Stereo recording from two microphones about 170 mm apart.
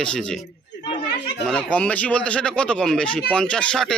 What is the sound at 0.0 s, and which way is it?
Speech, 5° left (ahead or behind).